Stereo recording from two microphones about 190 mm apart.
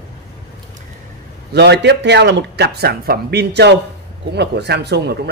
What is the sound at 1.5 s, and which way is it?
Speech, 65° right (ahead or behind).